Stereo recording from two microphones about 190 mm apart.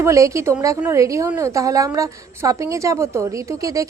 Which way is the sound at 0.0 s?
15° right (ahead or behind).